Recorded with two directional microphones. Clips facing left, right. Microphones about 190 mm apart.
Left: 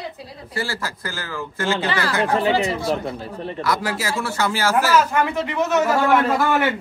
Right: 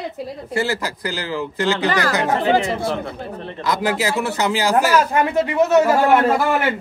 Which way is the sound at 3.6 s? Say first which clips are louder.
Right 4 dB; 20° right (ahead or behind).